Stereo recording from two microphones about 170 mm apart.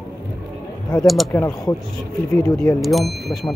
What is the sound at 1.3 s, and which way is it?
Speech, 10° left (ahead or behind).